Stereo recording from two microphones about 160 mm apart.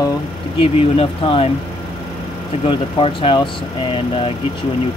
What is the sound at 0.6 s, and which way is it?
Speech, 35° left (ahead or behind).